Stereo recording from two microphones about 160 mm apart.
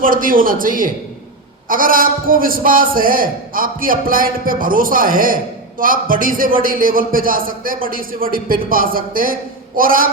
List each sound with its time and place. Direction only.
0.0 s a man's voice: 60° right (ahead or behind)